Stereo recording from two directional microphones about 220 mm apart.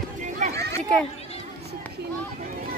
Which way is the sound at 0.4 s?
45° right (ahead or behind).